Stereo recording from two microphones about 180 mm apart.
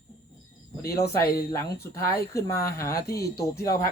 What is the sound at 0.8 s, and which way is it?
Speech, 60° left (ahead or behind).